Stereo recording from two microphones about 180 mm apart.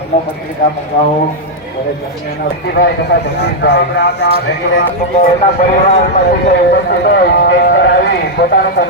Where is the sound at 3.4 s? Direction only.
70° left (ahead or behind).